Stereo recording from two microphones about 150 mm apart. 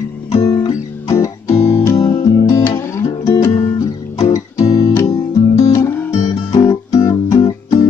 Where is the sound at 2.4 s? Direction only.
20° left (ahead or behind).